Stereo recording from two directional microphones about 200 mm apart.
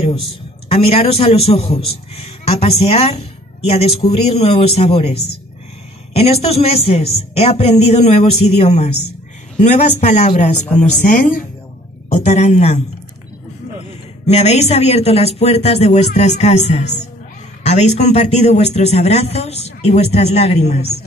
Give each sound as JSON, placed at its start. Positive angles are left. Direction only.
{"t": 0.7, "sound": "speech", "side_deg": 30}
{"t": 14.2, "sound": "speech", "side_deg": 35}